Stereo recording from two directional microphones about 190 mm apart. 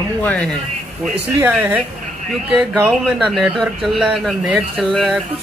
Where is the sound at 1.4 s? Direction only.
10° right (ahead or behind).